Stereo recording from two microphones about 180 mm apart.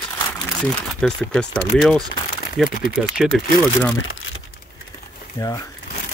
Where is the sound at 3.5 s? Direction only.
15° left (ahead or behind).